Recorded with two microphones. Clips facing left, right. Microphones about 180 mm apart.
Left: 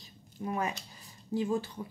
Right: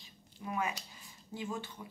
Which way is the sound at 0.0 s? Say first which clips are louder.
Left 7 dB; 40° left (ahead or behind).